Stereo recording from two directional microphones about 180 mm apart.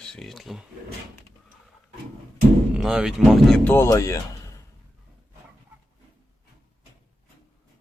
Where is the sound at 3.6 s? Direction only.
15° left (ahead or behind).